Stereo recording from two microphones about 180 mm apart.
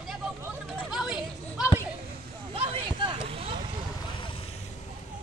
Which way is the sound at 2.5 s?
30° right (ahead or behind).